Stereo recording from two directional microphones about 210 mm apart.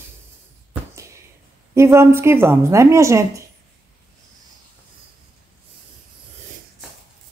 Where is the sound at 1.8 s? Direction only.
15° right (ahead or behind).